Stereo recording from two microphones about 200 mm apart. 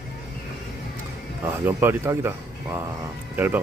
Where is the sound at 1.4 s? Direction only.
10° right (ahead or behind).